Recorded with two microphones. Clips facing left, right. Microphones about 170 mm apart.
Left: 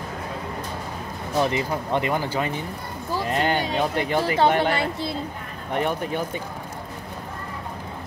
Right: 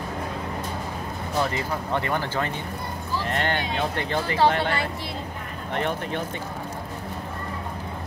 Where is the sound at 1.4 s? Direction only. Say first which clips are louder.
Left 4 dB; 20° left (ahead or behind).